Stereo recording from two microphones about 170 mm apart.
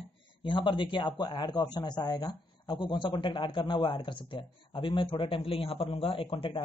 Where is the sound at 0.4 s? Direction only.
30° left (ahead or behind).